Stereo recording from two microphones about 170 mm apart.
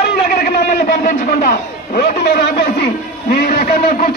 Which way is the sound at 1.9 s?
70° left (ahead or behind).